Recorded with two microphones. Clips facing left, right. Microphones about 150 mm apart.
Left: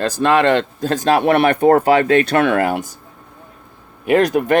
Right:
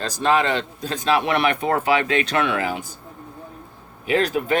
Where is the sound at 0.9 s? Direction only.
45° left (ahead or behind).